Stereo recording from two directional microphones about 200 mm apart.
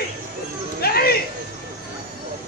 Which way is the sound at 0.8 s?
50° left (ahead or behind).